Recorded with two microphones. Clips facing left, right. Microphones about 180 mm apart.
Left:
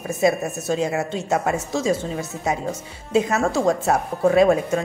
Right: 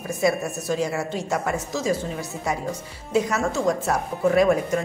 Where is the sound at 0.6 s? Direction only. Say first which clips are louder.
Left 3 dB; 20° left (ahead or behind).